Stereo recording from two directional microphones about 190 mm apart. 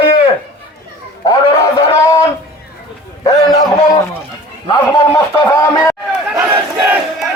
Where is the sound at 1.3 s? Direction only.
20° left (ahead or behind).